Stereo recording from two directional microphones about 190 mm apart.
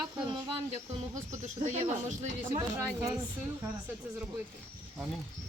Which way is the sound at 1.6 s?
40° right (ahead or behind).